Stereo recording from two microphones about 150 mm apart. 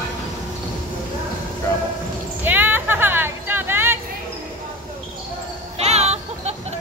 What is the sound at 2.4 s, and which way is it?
Vehicle, 10° right (ahead or behind).